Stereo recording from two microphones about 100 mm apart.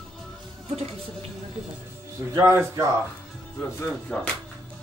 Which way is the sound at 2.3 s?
25° right (ahead or behind).